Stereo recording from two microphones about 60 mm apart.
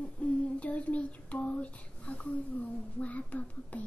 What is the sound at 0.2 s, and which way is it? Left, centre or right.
Humming, left.